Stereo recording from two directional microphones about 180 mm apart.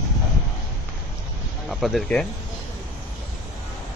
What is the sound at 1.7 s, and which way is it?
Speech, centre (ahead or behind).